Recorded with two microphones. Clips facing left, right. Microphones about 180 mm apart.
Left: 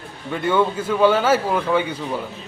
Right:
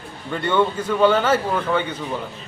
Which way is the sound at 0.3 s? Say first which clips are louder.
Left 1 dB; 5° left (ahead or behind).